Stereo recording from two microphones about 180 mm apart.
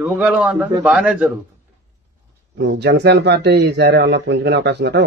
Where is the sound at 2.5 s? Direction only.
75° right (ahead or behind).